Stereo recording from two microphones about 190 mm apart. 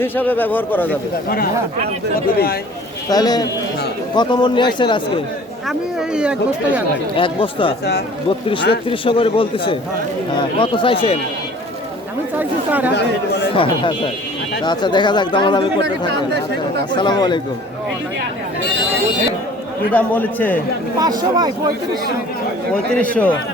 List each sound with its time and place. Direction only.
0.0 s a man's voice: 10° left (ahead or behind)
2.2 s speech: 50° left (ahead or behind)
3.1 s speech: 20° left (ahead or behind)
5.6 s speech: 5° right (ahead or behind)
7.2 s speech: 25° left (ahead or behind)
8.9 s speech: 30° left (ahead or behind)
12.4 s speech: 10° right (ahead or behind)
13.6 s speech: 25° left (ahead or behind)
16.9 s speech: 25° left (ahead or behind)
19.9 s a man's voice: 10° left (ahead or behind)
21.0 s speech: 20° right (ahead or behind)
22.7 s a man's voice: 5° left (ahead or behind)